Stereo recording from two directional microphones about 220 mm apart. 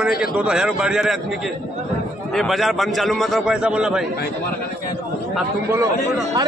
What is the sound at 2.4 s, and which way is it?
A man's voice, centre (ahead or behind).